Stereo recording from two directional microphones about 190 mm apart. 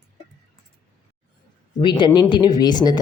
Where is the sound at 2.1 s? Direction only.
25° left (ahead or behind).